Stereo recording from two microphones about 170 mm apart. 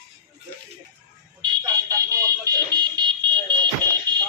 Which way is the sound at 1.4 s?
20° right (ahead or behind).